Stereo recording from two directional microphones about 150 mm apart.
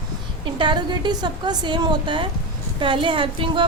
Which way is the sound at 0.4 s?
30° right (ahead or behind).